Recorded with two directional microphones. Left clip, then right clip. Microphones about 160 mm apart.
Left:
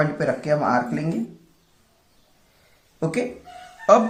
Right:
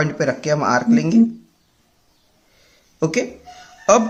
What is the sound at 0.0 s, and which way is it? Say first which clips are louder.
Speech: right 2 dB; 50° right (ahead or behind).